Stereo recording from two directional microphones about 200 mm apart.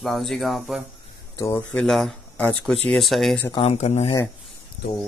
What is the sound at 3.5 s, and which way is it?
Speech, 30° left (ahead or behind).